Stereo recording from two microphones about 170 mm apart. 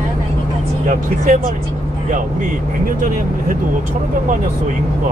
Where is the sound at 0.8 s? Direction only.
50° right (ahead or behind).